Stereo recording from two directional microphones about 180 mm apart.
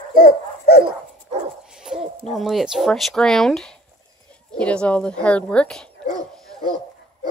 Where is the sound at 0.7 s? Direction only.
60° left (ahead or behind).